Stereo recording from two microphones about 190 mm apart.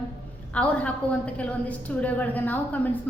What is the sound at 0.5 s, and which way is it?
A woman's voice, 5° left (ahead or behind).